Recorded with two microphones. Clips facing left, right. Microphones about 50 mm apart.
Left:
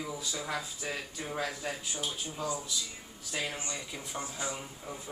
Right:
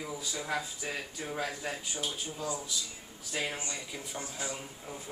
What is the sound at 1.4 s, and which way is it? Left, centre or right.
Speech, centre.